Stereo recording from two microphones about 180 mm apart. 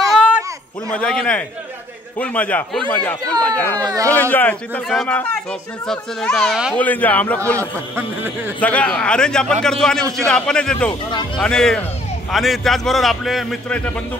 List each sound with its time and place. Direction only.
0.1 s a sound: 5° right (ahead or behind)
0.9 s a man's voice: 5° left (ahead or behind)
3.8 s speech: 20° right (ahead or behind)
4.1 s a man's voice: 10° left (ahead or behind)
8.5 s a man's voice: 5° left (ahead or behind)
10.9 s speech: 25° left (ahead or behind)
11.3 s a man's voice: 5° left (ahead or behind)